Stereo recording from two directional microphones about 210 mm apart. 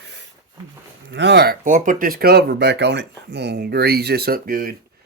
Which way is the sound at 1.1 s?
55° right (ahead or behind).